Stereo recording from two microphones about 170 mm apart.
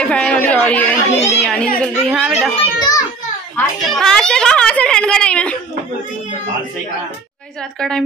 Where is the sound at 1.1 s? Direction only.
40° left (ahead or behind).